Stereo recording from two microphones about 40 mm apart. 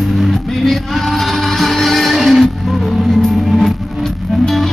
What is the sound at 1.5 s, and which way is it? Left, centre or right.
Music, centre.